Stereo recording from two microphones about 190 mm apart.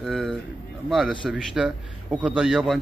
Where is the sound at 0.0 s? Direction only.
Centre (ahead or behind).